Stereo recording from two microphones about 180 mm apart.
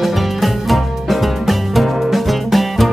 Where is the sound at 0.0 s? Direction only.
Centre (ahead or behind).